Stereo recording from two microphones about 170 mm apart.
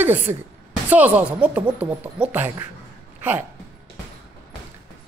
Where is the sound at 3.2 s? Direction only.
10° right (ahead or behind).